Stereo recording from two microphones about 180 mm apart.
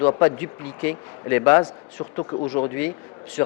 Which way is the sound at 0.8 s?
10° left (ahead or behind).